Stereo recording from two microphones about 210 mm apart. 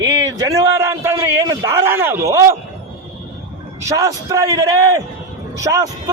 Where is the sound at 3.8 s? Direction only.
15° right (ahead or behind).